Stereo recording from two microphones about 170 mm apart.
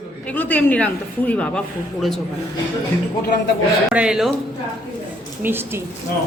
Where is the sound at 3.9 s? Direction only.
5° right (ahead or behind).